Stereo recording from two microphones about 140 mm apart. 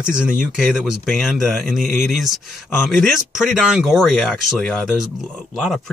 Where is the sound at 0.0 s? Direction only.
5° right (ahead or behind).